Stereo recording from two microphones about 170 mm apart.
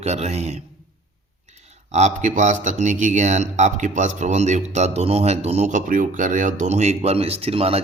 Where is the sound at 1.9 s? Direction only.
40° right (ahead or behind).